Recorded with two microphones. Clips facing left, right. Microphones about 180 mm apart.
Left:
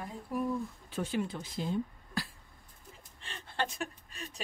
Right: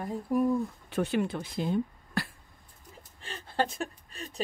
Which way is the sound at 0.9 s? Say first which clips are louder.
Right 5 dB; 65° right (ahead or behind).